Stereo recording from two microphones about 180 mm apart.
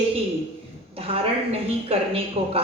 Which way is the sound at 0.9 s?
30° right (ahead or behind).